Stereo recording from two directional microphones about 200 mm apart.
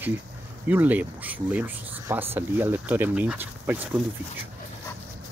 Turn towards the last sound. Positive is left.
turn(degrees=-10)  # may be behind; listen again after turning